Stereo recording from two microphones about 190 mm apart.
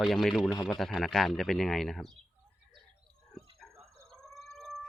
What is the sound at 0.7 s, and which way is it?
Speech, centre (ahead or behind).